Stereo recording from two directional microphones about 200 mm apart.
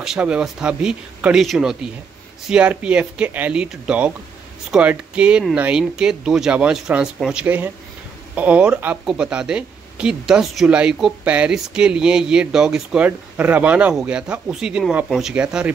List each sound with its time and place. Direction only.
0.0 s speech: 5° right (ahead or behind)